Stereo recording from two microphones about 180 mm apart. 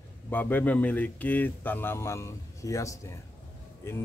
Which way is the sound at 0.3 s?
10° left (ahead or behind).